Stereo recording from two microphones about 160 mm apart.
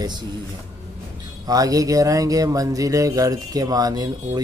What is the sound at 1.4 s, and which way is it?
Speech, 25° right (ahead or behind).